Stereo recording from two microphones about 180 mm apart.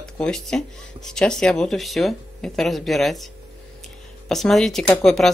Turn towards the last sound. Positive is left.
turn(degrees=5)  # may be behind; listen again after turning